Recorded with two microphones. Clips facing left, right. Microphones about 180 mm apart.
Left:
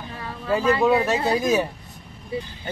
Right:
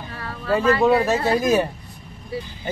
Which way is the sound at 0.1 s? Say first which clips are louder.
Right 1 dB; 15° left (ahead or behind).